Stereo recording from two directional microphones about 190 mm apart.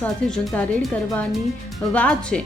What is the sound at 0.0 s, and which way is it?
Speech, 5° left (ahead or behind).